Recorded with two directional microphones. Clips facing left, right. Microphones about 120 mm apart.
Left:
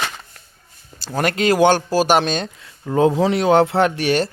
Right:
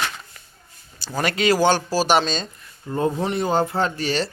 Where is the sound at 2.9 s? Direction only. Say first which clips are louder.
Left 7 dB; 90° left; by 4.2 s 65° left (ahead or behind).